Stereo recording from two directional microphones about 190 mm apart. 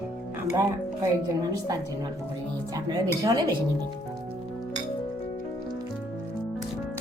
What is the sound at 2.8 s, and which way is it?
Speech, 20° right (ahead or behind).